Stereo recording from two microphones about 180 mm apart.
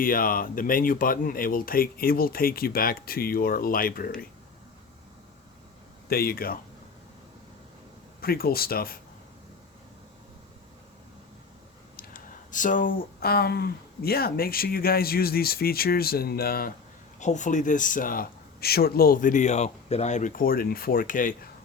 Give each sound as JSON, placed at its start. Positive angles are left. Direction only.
{"t": 0.0, "sound": "speech", "side_deg": 50}
{"t": 6.1, "sound": "speech", "side_deg": 60}
{"t": 8.2, "sound": "speech", "side_deg": 55}
{"t": 11.9, "sound": "speech", "side_deg": 50}
{"t": 17.2, "sound": "speech", "side_deg": 40}